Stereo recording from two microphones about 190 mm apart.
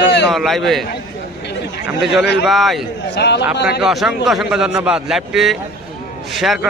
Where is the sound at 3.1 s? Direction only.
65° left (ahead or behind).